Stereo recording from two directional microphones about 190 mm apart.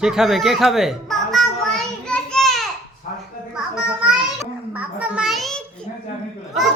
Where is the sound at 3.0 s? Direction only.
45° left (ahead or behind).